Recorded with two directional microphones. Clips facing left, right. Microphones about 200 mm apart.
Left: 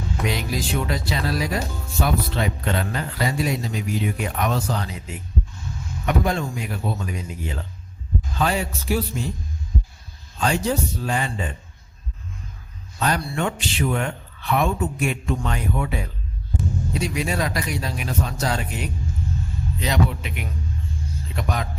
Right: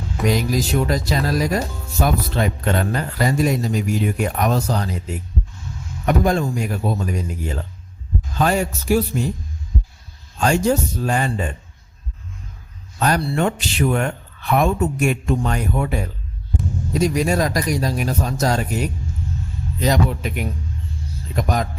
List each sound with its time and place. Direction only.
0.3 s speech: 45° right (ahead or behind)
10.4 s speech: 45° right (ahead or behind)
13.0 s speech: 45° right (ahead or behind)